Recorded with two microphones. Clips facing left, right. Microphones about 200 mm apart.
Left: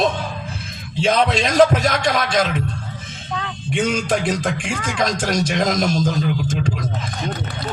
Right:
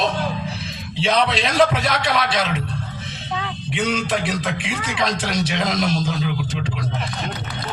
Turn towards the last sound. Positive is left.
turn(degrees=45)  # may be behind; listen again after turning